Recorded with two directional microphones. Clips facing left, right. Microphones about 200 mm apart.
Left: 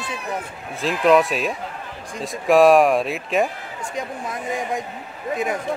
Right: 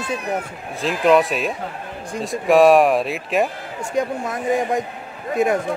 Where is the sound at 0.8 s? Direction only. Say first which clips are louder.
Right 1 dB; centre (ahead or behind).